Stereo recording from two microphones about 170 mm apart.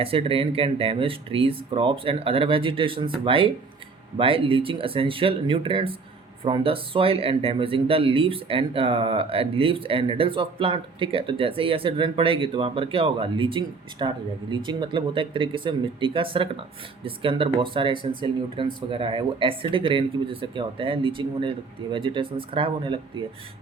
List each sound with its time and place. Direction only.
0.0 s speech: 35° right (ahead or behind)